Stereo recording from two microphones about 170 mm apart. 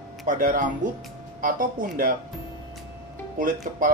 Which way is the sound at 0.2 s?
50° right (ahead or behind).